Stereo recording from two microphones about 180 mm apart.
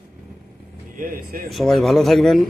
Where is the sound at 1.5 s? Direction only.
Centre (ahead or behind).